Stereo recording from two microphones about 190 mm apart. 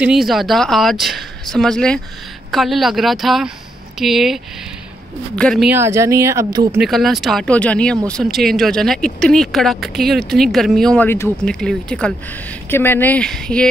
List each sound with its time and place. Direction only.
0.0 s speech: centre (ahead or behind)
5.7 s speech: 15° right (ahead or behind)
6.8 s speech: centre (ahead or behind)